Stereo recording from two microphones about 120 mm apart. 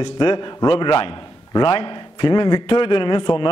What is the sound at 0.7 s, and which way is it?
A man's voice, 45° left (ahead or behind).